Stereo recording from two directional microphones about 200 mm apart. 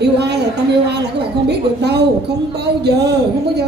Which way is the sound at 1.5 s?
55° right (ahead or behind).